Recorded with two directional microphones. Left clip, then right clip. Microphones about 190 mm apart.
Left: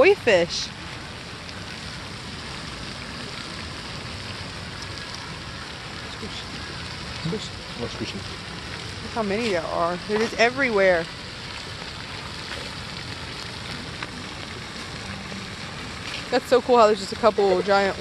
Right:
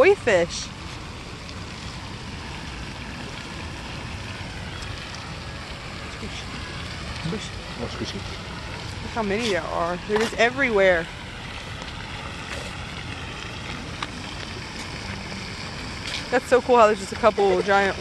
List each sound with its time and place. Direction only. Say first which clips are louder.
0.0 s speech: even; 25° left (ahead or behind)
9.1 s speech: even; 10° left (ahead or behind)
16.3 s speech: even; 10° left (ahead or behind)